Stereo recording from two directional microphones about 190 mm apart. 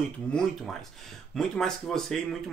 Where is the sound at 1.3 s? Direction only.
5° left (ahead or behind).